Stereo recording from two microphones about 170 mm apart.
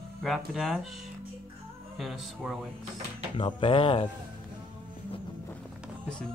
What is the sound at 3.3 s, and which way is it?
Speech, 30° left (ahead or behind).